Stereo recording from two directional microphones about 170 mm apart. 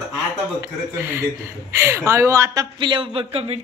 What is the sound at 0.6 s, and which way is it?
Speech, 15° right (ahead or behind).